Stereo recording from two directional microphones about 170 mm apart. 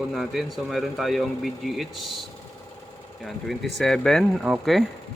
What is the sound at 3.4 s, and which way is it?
Speech, centre (ahead or behind).